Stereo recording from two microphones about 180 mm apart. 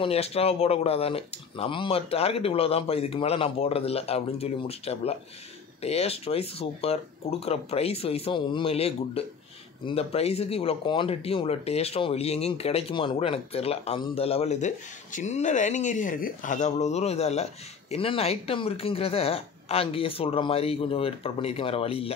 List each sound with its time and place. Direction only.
0.0 s speech: 35° left (ahead or behind)